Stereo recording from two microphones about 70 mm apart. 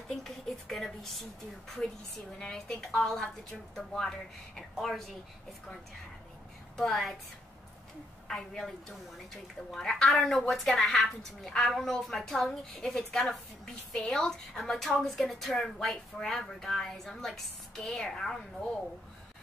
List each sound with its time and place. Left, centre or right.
0.1 s a woman's voice: centre
6.8 s a woman's voice: centre
8.3 s a woman's voice: centre